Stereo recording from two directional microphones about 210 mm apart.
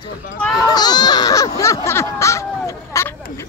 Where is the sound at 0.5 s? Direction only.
20° left (ahead or behind).